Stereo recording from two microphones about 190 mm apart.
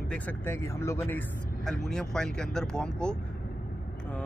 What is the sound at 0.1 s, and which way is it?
Speech, 10° left (ahead or behind).